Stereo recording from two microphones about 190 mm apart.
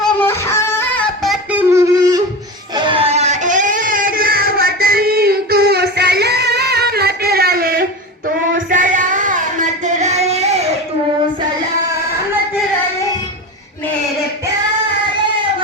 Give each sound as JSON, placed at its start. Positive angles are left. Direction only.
{"t": 0.0, "sound": "music", "side_deg": 10}
{"t": 1.2, "sound": "a sound", "side_deg": -5}
{"t": 8.5, "sound": "female singing", "side_deg": -45}